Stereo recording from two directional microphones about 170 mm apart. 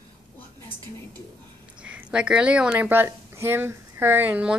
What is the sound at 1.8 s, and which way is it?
Speech, 5° right (ahead or behind).